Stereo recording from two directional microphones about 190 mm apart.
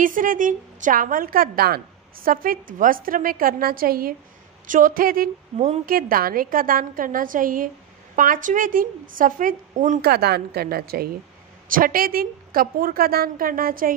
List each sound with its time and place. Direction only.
0.0 s a woman's voice: 45° right (ahead or behind)
10.1 s a woman's voice: 55° right (ahead or behind)